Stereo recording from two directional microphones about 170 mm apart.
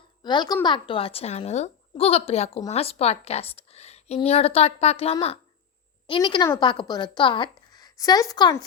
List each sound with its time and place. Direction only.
0.2 s a woman's voice: 25° left (ahead or behind)